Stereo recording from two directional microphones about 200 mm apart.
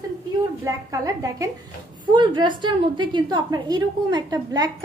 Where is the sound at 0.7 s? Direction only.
15° right (ahead or behind).